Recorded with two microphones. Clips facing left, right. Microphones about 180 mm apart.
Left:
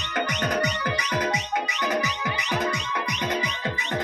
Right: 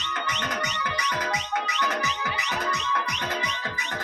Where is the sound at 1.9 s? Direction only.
15° left (ahead or behind).